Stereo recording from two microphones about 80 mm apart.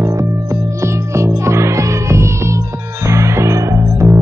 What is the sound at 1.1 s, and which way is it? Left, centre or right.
Music, right.